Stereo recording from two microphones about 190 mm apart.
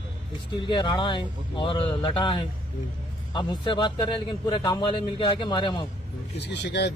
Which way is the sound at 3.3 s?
25° left (ahead or behind).